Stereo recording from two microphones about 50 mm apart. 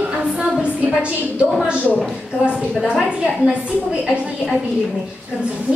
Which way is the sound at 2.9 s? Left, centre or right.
Centre.